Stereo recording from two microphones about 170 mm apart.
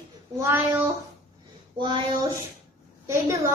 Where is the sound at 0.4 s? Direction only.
10° right (ahead or behind).